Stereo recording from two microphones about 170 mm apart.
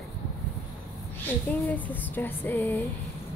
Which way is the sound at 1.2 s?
10° left (ahead or behind).